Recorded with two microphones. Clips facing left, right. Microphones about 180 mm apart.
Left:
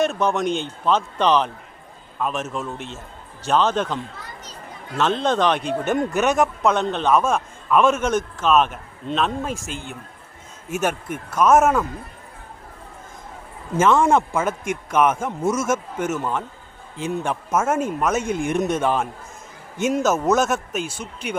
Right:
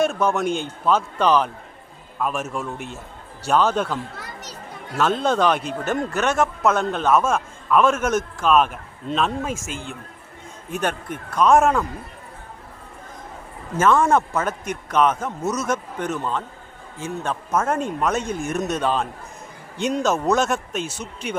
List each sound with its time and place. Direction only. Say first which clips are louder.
0.1 s a man's voice: even; 5° right (ahead or behind)
5.9 s a man's voice: left 2 dB; 15° left (ahead or behind)
6.6 s a man's voice: even; 5° right (ahead or behind)
7.3 s a sound: even; 5° left (ahead or behind)
7.9 s a man's voice: even; 10° right (ahead or behind)
13.7 s a man's voice: left 1 dB; 15° left (ahead or behind)
17.5 s a man's voice: left 1 dB; 5° left (ahead or behind)
18.3 s a man's voice: left 3 dB; 15° left (ahead or behind)